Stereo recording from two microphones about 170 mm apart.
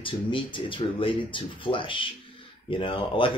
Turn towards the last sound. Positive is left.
turn(degrees=30)  # may be behind; listen again after turning